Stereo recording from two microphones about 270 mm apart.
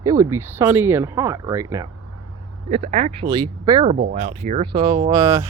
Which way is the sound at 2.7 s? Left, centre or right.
Right.